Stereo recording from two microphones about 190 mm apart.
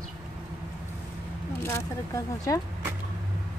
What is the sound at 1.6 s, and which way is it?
Speech, 15° left (ahead or behind).